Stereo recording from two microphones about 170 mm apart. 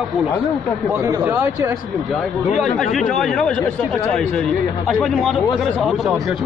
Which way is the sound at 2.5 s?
Centre (ahead or behind).